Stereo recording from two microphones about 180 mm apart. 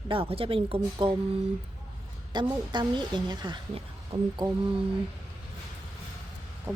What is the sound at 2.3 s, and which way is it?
A woman's voice, 25° right (ahead or behind).